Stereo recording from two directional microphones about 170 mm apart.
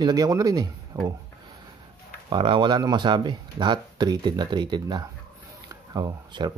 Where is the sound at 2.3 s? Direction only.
30° right (ahead or behind).